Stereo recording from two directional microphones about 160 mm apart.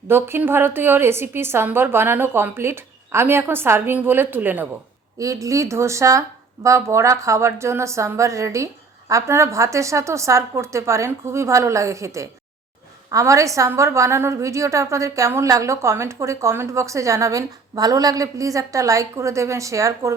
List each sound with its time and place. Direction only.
0.1 s a woman's voice: 15° right (ahead or behind)